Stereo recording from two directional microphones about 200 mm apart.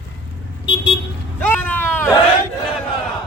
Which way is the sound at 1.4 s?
10° left (ahead or behind).